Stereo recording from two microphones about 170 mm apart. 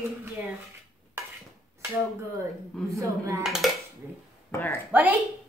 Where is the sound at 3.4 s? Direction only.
Centre (ahead or behind).